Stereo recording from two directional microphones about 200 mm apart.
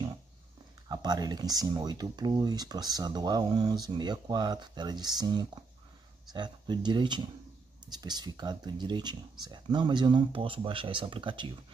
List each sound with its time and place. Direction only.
0.8 s speech: 20° right (ahead or behind)